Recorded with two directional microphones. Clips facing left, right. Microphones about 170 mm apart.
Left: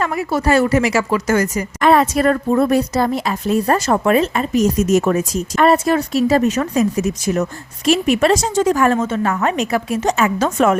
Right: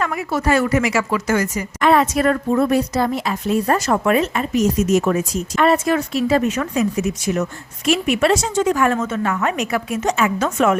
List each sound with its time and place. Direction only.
0.0 s speech: 35° left (ahead or behind)